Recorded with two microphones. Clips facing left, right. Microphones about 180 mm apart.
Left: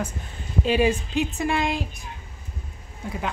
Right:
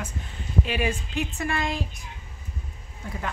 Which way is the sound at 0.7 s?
30° left (ahead or behind).